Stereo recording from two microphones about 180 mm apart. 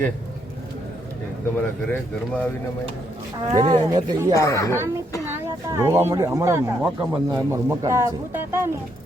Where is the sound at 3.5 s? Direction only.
25° right (ahead or behind).